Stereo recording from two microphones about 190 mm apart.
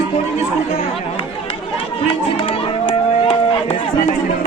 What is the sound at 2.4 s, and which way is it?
Run, 30° left (ahead or behind).